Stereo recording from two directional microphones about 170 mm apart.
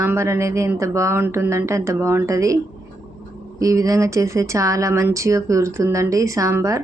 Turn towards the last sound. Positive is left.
turn(degrees=-15)  # may be behind; listen again after turning